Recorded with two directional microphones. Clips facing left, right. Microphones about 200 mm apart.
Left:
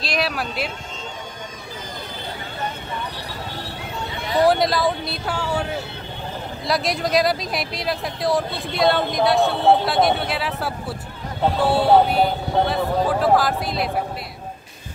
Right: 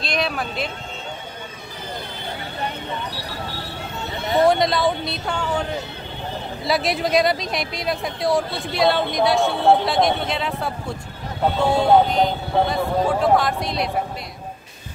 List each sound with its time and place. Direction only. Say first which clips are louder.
0.0 s speech: even; centre (ahead or behind)
4.2 s a sound: right 1 dB; 20° right (ahead or behind)
4.5 s speech: left 1 dB; centre (ahead or behind)